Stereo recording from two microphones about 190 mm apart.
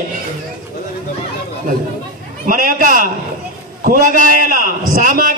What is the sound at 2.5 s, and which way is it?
A man's voice, 45° right (ahead or behind).